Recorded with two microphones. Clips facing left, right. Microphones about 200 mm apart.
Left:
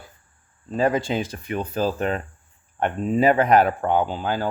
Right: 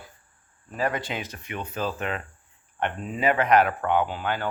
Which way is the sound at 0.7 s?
25° left (ahead or behind).